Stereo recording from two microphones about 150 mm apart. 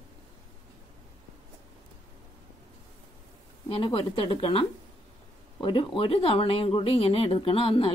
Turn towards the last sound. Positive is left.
turn(degrees=35)  # may be behind; listen again after turning